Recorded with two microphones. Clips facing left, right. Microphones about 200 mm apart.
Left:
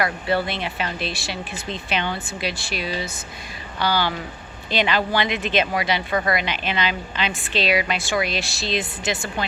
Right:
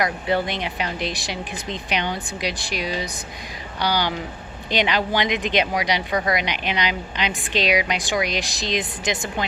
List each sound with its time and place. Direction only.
0.0 s a woman's voice: 15° right (ahead or behind)